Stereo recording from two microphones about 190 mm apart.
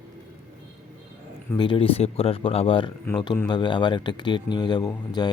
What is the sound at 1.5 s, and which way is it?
Speech, 25° left (ahead or behind).